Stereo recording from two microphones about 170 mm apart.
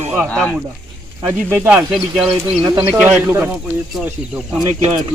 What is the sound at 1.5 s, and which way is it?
Speech, 10° right (ahead or behind).